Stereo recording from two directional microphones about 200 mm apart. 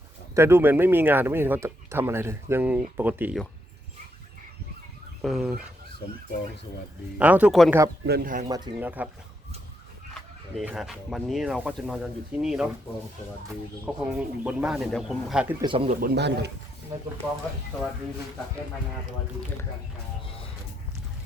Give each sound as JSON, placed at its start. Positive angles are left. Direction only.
{"t": 0.3, "sound": "speech", "side_deg": -10}
{"t": 5.2, "sound": "speech", "side_deg": 0}
{"t": 7.2, "sound": "speech", "side_deg": -10}
{"t": 8.0, "sound": "speech", "side_deg": -50}
{"t": 8.4, "sound": "speech", "side_deg": -20}
{"t": 8.8, "sound": "speech", "side_deg": -10}
{"t": 10.6, "sound": "speech", "side_deg": 0}
{"t": 13.8, "sound": "speech", "side_deg": -5}
{"t": 15.6, "sound": "speech", "side_deg": -25}
{"t": 15.9, "sound": "speech", "side_deg": -50}